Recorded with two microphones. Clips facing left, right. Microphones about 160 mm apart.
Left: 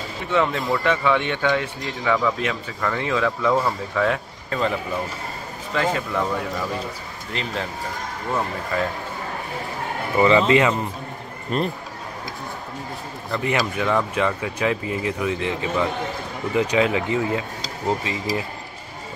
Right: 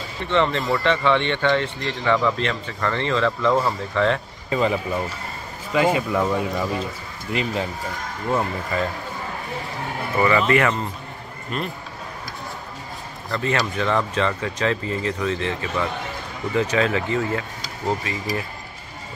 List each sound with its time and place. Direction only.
0.3 s speech: 5° left (ahead or behind)
4.5 s speech: 5° right (ahead or behind)
8.7 s speech: centre (ahead or behind)
10.1 s speech: 20° left (ahead or behind)
11.5 s speech: 40° left (ahead or behind)
13.3 s speech: 15° left (ahead or behind)